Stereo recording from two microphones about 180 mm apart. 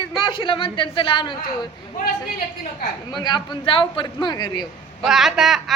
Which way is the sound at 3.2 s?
25° left (ahead or behind).